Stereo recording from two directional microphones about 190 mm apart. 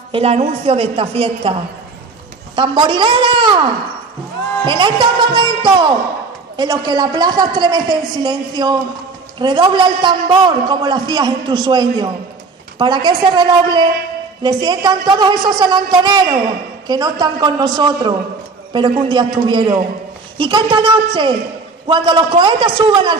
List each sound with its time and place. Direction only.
0.1 s a woman's voice: 35° right (ahead or behind)
4.6 s a man's voice: 25° right (ahead or behind)